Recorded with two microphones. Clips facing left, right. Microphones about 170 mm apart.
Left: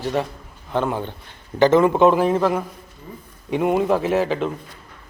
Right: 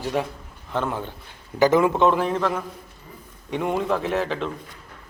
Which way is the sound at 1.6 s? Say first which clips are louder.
Left 3 dB; 10° right (ahead or behind).